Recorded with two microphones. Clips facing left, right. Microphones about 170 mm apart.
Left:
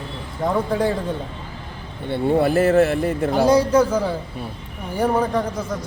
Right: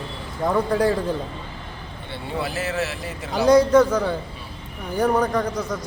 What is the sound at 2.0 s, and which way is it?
Speech, 50° left (ahead or behind).